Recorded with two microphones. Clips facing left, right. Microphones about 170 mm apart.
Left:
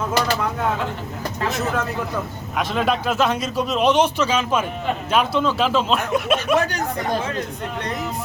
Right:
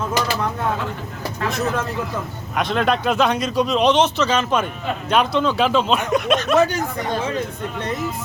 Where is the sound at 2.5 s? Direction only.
5° left (ahead or behind).